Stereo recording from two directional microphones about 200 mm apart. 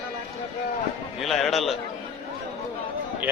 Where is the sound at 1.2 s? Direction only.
Centre (ahead or behind).